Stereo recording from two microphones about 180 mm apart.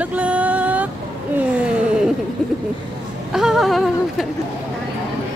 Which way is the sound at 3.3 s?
Centre (ahead or behind).